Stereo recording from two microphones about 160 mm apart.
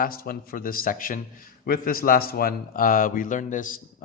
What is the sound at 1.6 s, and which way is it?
A man's voice, 70° left (ahead or behind).